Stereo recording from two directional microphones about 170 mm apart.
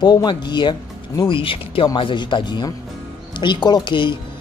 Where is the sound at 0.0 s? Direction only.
25° left (ahead or behind).